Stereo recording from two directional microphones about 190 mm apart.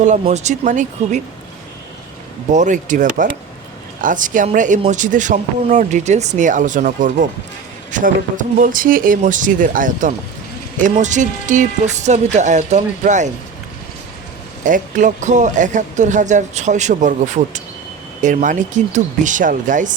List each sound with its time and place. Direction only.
0.0 s speech: 40° right (ahead or behind)
2.5 s speech: 40° right (ahead or behind)
14.6 s speech: 40° right (ahead or behind)